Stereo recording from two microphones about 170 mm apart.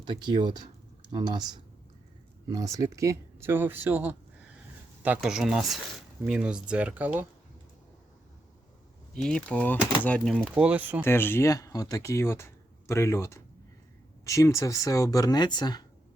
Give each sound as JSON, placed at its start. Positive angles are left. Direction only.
{"t": 0.0, "sound": "speech", "side_deg": -25}
{"t": 2.5, "sound": "speech", "side_deg": -20}
{"t": 9.1, "sound": "speech", "side_deg": 5}
{"t": 10.5, "sound": "speech", "side_deg": -5}
{"t": 11.0, "sound": "speech", "side_deg": 15}